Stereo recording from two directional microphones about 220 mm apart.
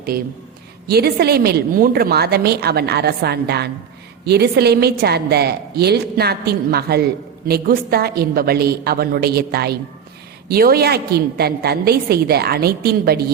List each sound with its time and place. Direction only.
0.1 s a woman's voice: 45° right (ahead or behind)